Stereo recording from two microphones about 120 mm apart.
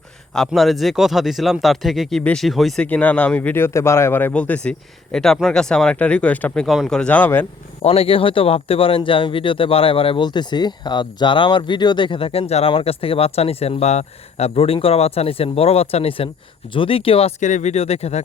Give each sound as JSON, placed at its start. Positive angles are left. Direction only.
{"t": 0.3, "sound": "speech", "side_deg": 0}
{"t": 2.8, "sound": "speech", "side_deg": 10}
{"t": 7.8, "sound": "speech", "side_deg": 55}
{"t": 17.4, "sound": "speech", "side_deg": 80}